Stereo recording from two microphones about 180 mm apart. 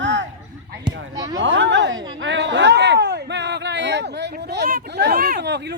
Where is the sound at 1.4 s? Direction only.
85° right.